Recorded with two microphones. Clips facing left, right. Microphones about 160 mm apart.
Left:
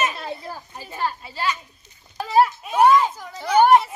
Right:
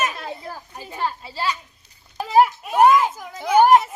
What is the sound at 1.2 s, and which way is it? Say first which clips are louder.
Children playing: even; 30° right (ahead or behind).